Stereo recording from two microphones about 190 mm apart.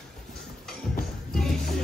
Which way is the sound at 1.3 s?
Centre (ahead or behind).